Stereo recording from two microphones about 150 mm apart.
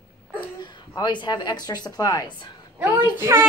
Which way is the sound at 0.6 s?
30° left (ahead or behind).